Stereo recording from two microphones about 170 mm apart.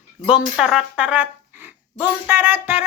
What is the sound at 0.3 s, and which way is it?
Speech, 5° right (ahead or behind).